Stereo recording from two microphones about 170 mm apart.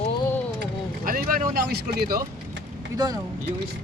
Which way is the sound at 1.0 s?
55° right (ahead or behind).